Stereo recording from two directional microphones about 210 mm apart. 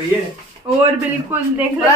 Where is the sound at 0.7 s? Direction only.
25° right (ahead or behind).